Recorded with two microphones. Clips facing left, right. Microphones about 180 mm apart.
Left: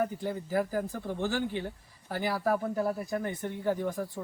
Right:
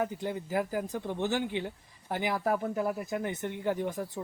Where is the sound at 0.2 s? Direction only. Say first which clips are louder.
Left 1 dB; 15° right (ahead or behind).